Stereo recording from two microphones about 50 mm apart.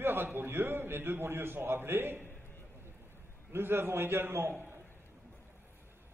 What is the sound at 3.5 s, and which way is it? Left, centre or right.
A man's voice, right.